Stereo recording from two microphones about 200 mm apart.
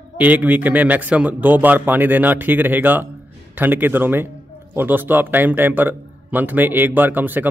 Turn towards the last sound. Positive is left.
turn(degrees=-10)  # may be behind; listen again after turning